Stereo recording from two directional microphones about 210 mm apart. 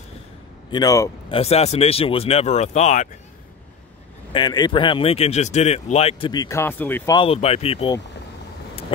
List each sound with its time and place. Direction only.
0.7 s a man's voice: 20° left (ahead or behind)
1.3 s a man's voice: 30° left (ahead or behind)
4.3 s a man's voice: 20° left (ahead or behind)
7.2 s a man's voice: 30° left (ahead or behind)